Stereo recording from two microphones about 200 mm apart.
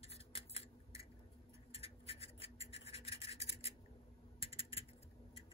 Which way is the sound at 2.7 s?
30° left (ahead or behind).